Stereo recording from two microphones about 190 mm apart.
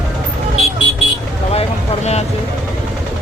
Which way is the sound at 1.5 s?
35° left (ahead or behind).